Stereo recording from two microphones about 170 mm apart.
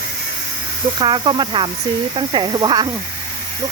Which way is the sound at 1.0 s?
25° right (ahead or behind).